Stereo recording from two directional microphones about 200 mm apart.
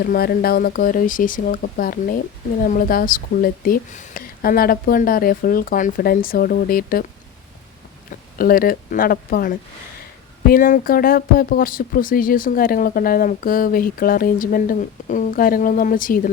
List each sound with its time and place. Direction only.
0.0 s speech: 50° left (ahead or behind)
8.1 s speech: 45° left (ahead or behind)